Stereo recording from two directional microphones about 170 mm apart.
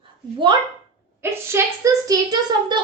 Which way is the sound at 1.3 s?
15° right (ahead or behind).